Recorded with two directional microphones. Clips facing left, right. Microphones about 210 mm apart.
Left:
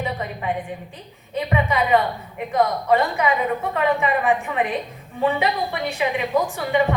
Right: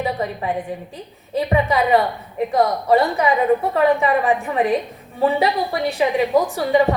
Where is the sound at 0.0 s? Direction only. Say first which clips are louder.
Right 4 dB; 35° right (ahead or behind).